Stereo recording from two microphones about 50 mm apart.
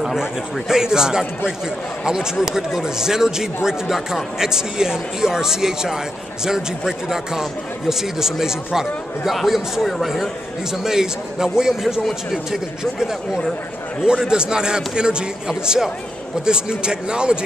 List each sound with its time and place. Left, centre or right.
0.0 s speech: centre
12.0 s speech: centre
14.0 s speech: centre